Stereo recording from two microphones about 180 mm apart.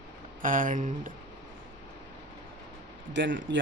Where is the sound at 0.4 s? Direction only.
50° right (ahead or behind).